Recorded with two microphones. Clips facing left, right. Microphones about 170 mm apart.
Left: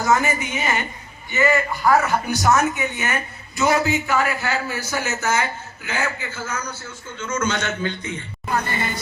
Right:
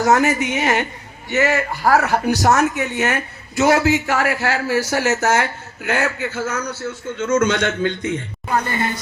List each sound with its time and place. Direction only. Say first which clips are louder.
0.0 s a man's voice: right 4 dB; 75° right (ahead or behind)